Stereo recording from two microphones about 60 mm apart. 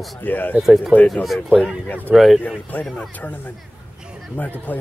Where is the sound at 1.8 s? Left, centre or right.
Left.